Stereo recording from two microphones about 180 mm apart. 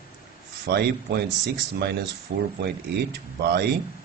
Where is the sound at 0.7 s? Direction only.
60° right (ahead or behind).